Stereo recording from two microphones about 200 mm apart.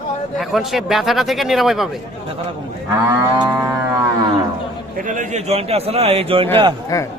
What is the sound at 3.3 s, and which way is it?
Livestock, 20° right (ahead or behind).